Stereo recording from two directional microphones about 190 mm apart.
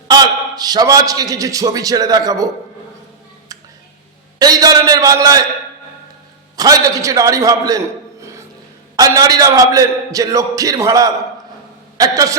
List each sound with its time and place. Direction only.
0.1 s a man's voice: 20° right (ahead or behind)
4.4 s a man's voice: 20° right (ahead or behind)
6.6 s a man's voice: 20° right (ahead or behind)
8.2 s a sound: 15° right (ahead or behind)
9.0 s a man's voice: 20° right (ahead or behind)